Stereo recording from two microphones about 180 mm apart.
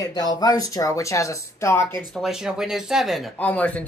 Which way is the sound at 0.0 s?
20° left (ahead or behind).